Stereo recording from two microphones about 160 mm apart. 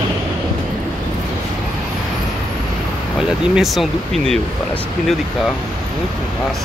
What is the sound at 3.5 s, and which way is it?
Speech, centre (ahead or behind).